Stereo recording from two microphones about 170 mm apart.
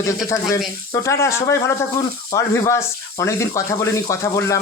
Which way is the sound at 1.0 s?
15° left (ahead or behind).